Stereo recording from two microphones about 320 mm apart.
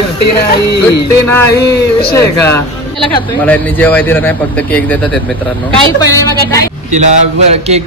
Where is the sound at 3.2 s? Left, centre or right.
Centre.